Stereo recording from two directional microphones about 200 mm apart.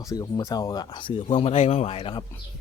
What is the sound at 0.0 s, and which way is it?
Speech, 20° left (ahead or behind).